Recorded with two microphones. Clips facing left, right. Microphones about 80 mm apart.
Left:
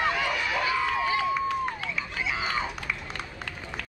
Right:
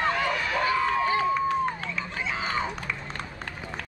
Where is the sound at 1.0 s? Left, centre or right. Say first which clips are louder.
Right 2 dB; right.